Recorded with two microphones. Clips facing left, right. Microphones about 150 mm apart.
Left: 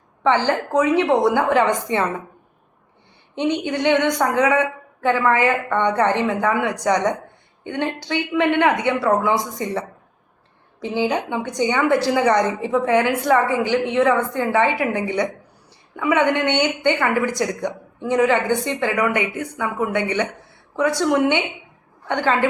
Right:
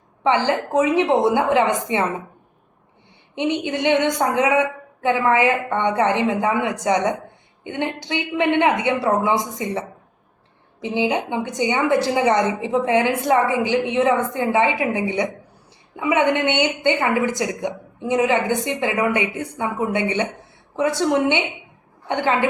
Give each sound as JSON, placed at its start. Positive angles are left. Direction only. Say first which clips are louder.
{"t": 0.2, "sound": "a woman's voice", "louder": "even", "side_deg": -15}
{"t": 3.3, "sound": "a woman's voice", "louder": "left 1 dB", "side_deg": -20}